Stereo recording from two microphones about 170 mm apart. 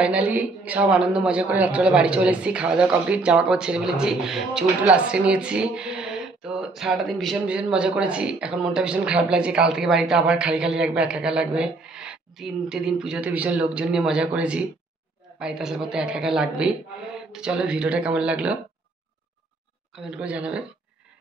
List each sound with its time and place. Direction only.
0.0 s speech: 5° right (ahead or behind)
20.1 s speech: 5° right (ahead or behind)